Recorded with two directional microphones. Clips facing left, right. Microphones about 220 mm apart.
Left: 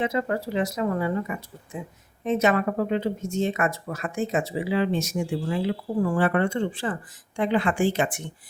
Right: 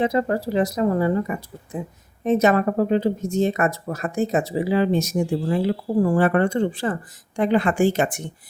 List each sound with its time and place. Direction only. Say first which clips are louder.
0.0 s speech: right 5 dB; 35° right (ahead or behind)